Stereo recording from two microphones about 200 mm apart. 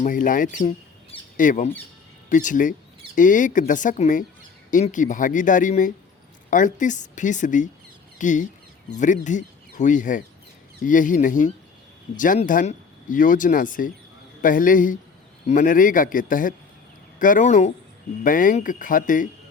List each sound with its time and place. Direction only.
0.0 s a man's voice: 40° left (ahead or behind)